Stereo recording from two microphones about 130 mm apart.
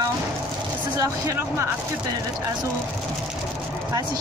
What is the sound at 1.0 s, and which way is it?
Speech, 25° right (ahead or behind).